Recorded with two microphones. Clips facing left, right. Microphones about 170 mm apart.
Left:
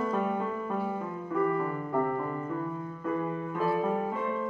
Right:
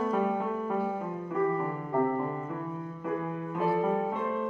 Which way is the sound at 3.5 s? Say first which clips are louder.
Right 1 dB; 20° right (ahead or behind).